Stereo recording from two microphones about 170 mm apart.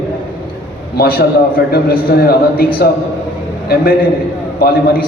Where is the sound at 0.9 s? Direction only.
60° left (ahead or behind).